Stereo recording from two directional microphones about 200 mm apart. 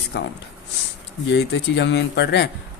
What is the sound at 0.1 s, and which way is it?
Speech, 55° left (ahead or behind).